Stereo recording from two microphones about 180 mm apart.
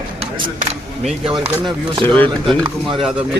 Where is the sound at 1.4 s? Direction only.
30° right (ahead or behind).